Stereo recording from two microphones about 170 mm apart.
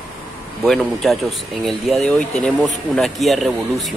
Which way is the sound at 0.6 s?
Centre (ahead or behind).